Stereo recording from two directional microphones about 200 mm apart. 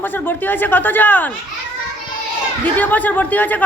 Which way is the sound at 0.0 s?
10° left (ahead or behind).